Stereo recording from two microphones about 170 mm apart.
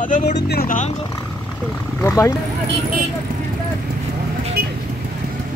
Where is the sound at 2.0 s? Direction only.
15° left (ahead or behind).